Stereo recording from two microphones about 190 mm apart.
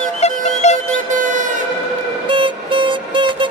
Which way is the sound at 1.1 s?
45° right (ahead or behind).